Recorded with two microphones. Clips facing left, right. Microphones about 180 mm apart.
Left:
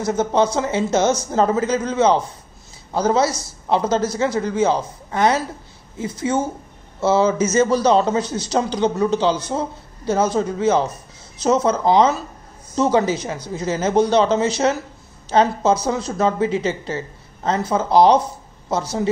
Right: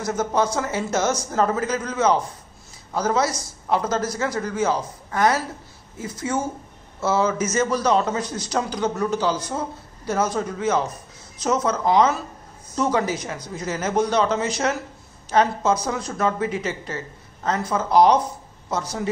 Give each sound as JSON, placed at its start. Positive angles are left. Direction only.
{"t": 0.0, "sound": "speech", "side_deg": 25}